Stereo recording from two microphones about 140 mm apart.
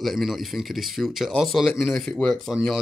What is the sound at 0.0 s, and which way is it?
Speech, centre (ahead or behind).